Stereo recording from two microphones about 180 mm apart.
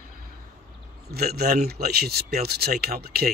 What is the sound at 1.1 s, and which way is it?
Speech, 60° right (ahead or behind).